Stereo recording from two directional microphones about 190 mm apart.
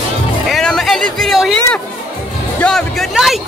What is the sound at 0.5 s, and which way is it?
Music, centre (ahead or behind).